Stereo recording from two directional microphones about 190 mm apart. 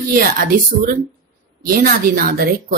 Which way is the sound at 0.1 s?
50° right (ahead or behind).